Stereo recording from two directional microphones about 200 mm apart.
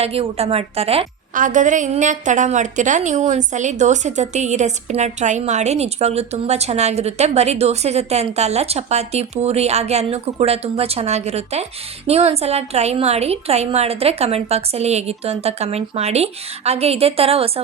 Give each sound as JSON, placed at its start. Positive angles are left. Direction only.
{"t": 0.0, "sound": "a woman's voice", "side_deg": -30}